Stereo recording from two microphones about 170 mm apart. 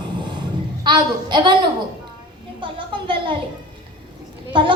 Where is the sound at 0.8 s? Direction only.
25° right (ahead or behind).